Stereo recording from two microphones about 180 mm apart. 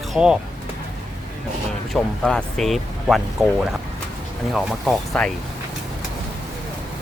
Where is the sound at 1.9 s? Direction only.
Centre (ahead or behind).